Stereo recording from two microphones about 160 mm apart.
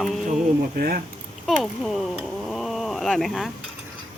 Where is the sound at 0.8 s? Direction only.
70° right (ahead or behind).